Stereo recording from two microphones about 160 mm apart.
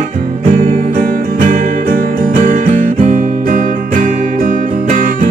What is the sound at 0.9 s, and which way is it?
Music, 55° right (ahead or behind).